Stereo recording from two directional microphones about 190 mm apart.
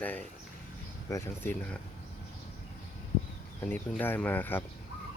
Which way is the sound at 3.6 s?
10° left (ahead or behind).